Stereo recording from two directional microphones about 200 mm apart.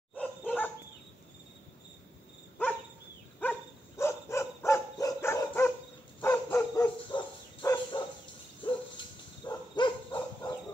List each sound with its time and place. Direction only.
0.1 s dog: 10° left (ahead or behind)
3.3 s dog: 10° left (ahead or behind)